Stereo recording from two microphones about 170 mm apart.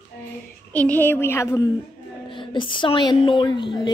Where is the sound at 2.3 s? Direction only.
30° left (ahead or behind).